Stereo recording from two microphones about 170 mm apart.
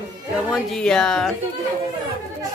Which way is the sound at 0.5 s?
5° left (ahead or behind).